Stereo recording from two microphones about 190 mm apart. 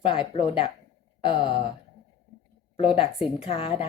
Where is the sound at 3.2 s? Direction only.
30° left (ahead or behind).